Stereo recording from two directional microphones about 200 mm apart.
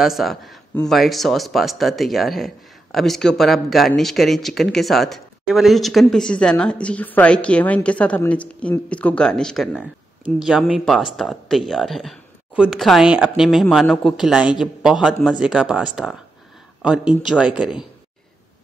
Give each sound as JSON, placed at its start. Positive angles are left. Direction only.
{"t": 0.0, "sound": "speech", "side_deg": 0}